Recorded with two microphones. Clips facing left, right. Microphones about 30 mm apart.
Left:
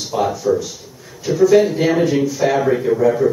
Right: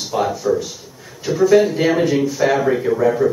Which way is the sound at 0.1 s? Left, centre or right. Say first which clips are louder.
Left 1 dB; centre.